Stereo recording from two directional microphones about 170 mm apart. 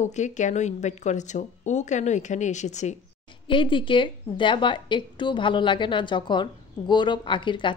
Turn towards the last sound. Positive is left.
turn(degrees=30)  # may be behind; listen again after turning